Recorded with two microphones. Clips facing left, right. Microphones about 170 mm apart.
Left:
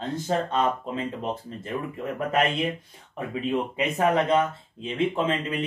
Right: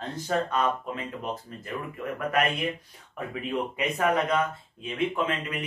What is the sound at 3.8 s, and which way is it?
Speech, 25° left (ahead or behind).